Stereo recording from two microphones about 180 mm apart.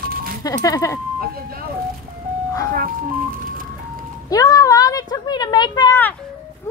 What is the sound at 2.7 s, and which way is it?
Speech, 50° right (ahead or behind).